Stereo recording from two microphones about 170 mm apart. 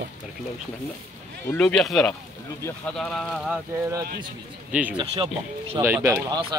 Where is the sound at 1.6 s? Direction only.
Centre (ahead or behind).